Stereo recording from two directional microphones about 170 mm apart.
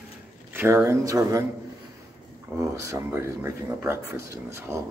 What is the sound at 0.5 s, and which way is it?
Speech, 15° right (ahead or behind).